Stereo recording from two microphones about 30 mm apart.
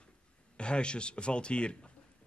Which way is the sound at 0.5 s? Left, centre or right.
Left.